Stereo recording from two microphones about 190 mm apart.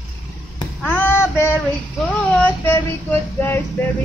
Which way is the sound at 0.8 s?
10° left (ahead or behind).